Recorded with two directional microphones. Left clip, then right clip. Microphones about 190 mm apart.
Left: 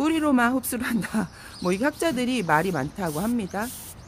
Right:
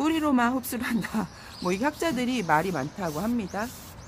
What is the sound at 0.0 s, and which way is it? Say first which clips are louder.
Speech: left 2 dB; 20° left (ahead or behind).